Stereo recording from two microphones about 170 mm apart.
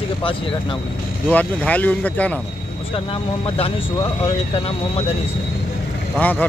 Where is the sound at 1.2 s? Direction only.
10° left (ahead or behind).